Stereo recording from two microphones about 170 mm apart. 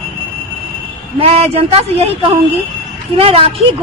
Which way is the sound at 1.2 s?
35° right (ahead or behind).